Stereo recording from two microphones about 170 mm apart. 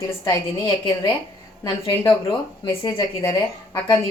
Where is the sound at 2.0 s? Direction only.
15° left (ahead or behind).